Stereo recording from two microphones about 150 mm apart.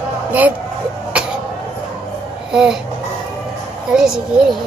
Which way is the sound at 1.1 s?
10° right (ahead or behind).